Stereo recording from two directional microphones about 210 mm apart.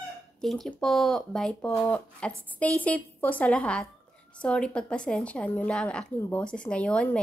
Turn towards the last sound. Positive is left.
turn(degrees=5)  # may be behind; listen again after turning